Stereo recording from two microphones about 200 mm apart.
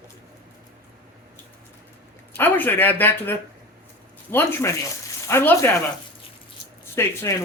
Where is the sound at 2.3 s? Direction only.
10° left (ahead or behind).